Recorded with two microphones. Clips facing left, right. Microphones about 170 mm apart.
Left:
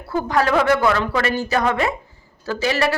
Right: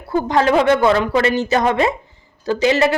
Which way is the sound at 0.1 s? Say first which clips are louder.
Right 3 dB; 20° right (ahead or behind).